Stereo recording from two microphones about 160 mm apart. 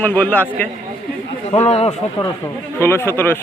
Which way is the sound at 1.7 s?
40° left (ahead or behind).